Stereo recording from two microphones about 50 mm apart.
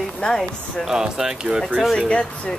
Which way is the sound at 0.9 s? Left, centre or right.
Centre.